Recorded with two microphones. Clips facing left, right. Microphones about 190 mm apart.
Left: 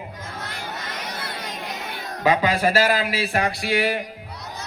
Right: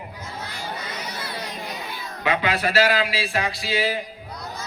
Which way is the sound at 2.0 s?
40° left (ahead or behind).